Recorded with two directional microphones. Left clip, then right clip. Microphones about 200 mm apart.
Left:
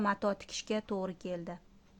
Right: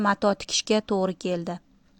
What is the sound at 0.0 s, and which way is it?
A woman's voice, 30° right (ahead or behind).